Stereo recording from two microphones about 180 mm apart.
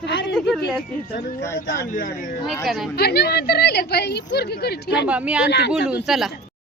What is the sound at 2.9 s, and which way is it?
A woman's voice, 65° left (ahead or behind).